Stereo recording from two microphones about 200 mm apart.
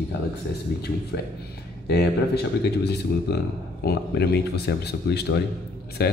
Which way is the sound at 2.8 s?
55° left (ahead or behind).